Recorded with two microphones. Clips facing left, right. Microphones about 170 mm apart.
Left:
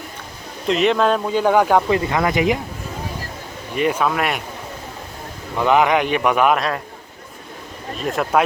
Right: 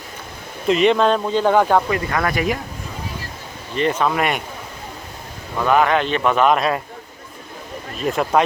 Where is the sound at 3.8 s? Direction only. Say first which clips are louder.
Even; 10° left (ahead or behind).